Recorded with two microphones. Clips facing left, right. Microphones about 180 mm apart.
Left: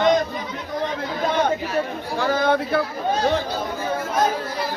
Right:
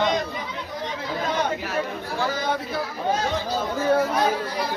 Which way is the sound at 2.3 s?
60° left (ahead or behind).